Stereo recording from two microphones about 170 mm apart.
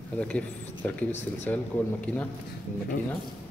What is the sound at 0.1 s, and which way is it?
Speech, 5° left (ahead or behind).